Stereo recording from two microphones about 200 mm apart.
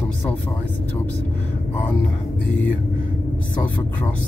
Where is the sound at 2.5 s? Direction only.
70° left (ahead or behind).